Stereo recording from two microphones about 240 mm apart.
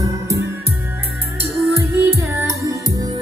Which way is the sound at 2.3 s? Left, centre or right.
Centre.